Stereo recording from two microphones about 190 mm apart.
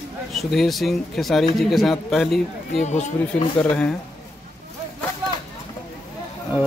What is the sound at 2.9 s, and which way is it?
Speech, 40° left (ahead or behind).